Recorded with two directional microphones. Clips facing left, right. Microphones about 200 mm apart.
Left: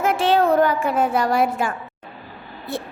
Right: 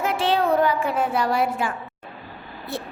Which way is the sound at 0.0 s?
50° left (ahead or behind).